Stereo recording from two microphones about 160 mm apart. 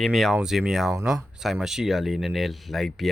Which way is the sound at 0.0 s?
Centre (ahead or behind).